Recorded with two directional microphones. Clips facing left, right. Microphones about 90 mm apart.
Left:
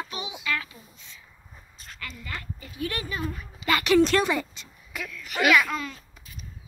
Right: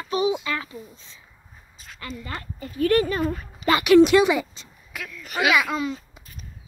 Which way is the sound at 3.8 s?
10° right (ahead or behind).